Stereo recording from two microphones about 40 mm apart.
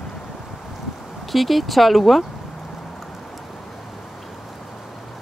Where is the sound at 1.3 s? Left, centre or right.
Centre.